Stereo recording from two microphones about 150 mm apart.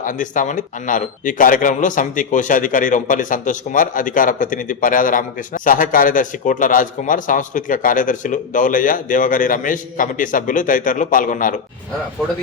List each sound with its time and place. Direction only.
0.0 s speech: 60° left (ahead or behind)